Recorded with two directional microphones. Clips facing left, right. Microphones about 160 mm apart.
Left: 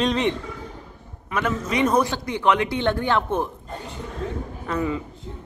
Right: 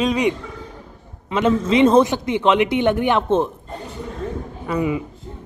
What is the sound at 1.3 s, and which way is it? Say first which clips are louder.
A man's voice: right 7 dB; 25° right (ahead or behind).